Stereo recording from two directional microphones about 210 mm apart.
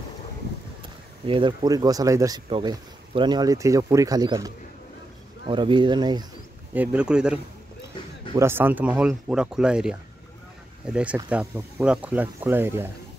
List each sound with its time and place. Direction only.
1.2 s speech: 25° right (ahead or behind)
5.5 s speech: 20° right (ahead or behind)
6.7 s speech: 5° right (ahead or behind)
8.4 s speech: 10° right (ahead or behind)